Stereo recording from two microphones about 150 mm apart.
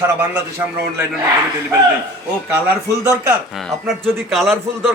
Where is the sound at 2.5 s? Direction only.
15° right (ahead or behind).